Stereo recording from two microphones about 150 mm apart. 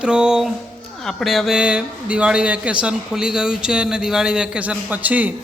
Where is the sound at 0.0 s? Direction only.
5° right (ahead or behind).